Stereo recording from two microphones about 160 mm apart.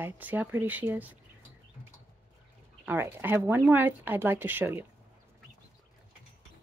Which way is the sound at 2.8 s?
10° right (ahead or behind).